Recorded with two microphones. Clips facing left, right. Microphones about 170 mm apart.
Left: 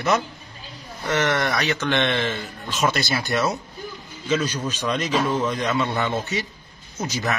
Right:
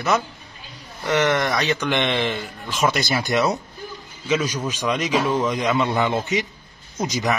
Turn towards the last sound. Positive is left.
turn(degrees=-15)  # may be behind; listen again after turning